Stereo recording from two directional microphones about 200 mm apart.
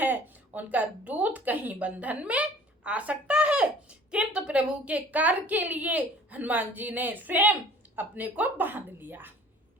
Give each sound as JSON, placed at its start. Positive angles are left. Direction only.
{"t": 0.0, "sound": "a woman's voice", "side_deg": -10}